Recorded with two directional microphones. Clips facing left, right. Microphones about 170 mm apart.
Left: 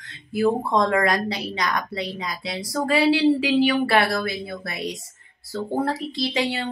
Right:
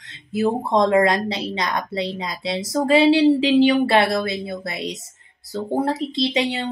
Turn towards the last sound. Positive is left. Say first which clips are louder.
# right 3 dB
turn(degrees=-20)  # may be behind; listen again after turning